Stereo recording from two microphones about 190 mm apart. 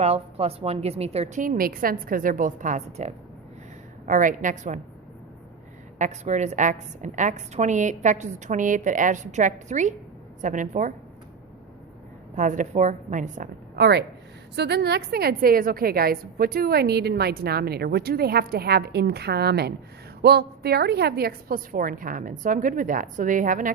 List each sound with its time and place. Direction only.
0.0 s a woman's voice: 35° right (ahead or behind)
6.0 s a woman's voice: 35° right (ahead or behind)
12.4 s a woman's voice: 40° right (ahead or behind)
13.7 s a woman's voice: 60° right (ahead or behind); by 23.7 s 45° right (ahead or behind)